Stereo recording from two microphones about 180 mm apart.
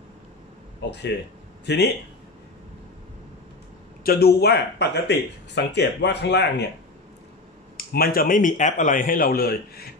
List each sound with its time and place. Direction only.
0.7 s speech: 70° left (ahead or behind)
4.0 s speech: 60° left (ahead or behind)
7.7 s a man's voice: 55° left (ahead or behind)